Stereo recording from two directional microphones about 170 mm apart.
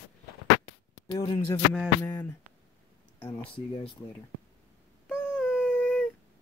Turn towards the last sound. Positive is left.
turn(degrees=5)  # may be behind; listen again after turning